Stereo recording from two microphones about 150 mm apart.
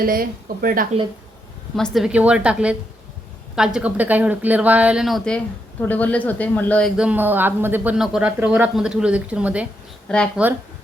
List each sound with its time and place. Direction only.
0.0 s speech: 70° right (ahead or behind)
1.7 s a woman's voice: centre (ahead or behind)
6.9 s a woman's voice: 10° right (ahead or behind)
10.1 s speech: 5° left (ahead or behind)